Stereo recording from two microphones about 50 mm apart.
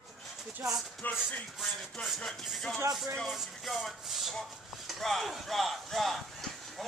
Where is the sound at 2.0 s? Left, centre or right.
Left.